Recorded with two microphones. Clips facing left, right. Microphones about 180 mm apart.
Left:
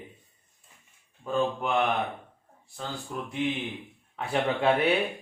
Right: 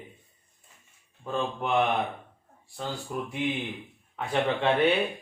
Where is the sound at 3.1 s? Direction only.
5° right (ahead or behind).